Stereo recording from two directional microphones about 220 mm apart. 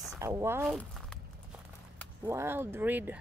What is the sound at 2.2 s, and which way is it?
Speech, 10° right (ahead or behind).